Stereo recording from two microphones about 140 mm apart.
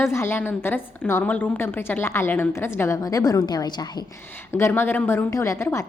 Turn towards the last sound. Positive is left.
turn(degrees=20)  # may be behind; listen again after turning